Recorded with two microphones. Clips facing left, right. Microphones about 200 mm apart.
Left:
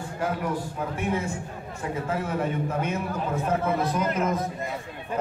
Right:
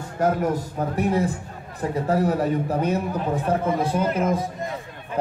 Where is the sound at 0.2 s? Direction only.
45° right (ahead or behind).